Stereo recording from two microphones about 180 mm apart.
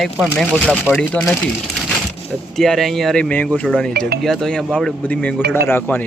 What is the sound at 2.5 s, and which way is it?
Speech, centre (ahead or behind).